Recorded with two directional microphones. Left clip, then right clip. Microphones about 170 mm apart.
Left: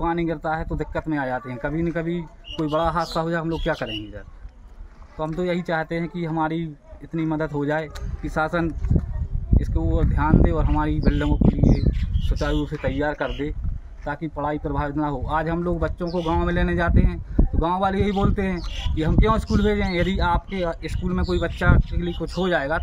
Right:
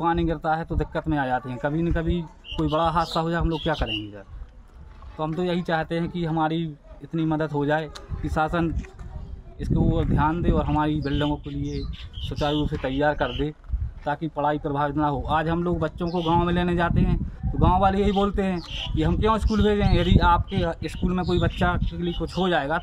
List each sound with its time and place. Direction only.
0.0 s a man's voice: 20° right (ahead or behind)
5.1 s a man's voice: 15° right (ahead or behind)
16.1 s speech: centre (ahead or behind)
16.3 s a man's voice: 10° right (ahead or behind)